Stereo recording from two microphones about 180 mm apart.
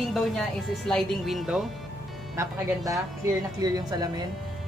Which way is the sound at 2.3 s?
20° right (ahead or behind).